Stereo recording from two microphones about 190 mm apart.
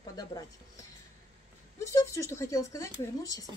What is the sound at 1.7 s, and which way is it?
A woman's voice, 15° left (ahead or behind).